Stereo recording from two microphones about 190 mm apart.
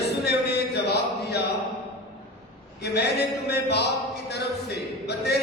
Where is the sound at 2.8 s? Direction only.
60° left (ahead or behind).